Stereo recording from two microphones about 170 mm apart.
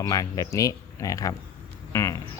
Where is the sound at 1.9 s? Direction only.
20° left (ahead or behind).